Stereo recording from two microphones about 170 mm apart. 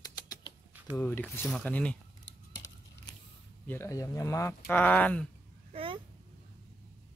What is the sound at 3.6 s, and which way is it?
Speech, 15° left (ahead or behind).